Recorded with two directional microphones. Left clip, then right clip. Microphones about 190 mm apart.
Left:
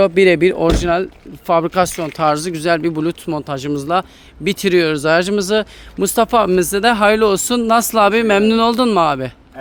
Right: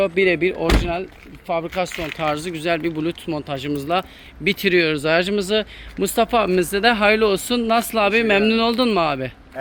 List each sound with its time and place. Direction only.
0.0 s speech: 45° left (ahead or behind)
2.1 s speech: 40° left (ahead or behind)